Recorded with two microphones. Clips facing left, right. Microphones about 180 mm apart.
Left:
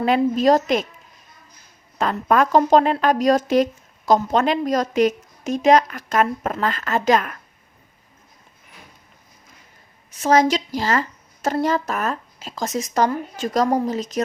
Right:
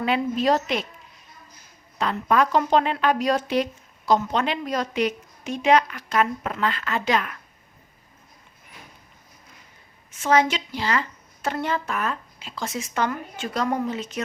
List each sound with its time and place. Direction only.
0.0 s speech: 40° left (ahead or behind)
2.0 s speech: 45° left (ahead or behind)
10.1 s speech: 40° left (ahead or behind)